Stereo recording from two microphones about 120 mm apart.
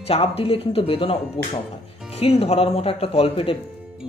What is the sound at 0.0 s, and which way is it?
Speech, 55° left (ahead or behind).